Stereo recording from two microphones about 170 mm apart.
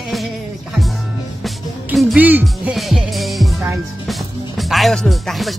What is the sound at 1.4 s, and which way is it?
Music, centre (ahead or behind).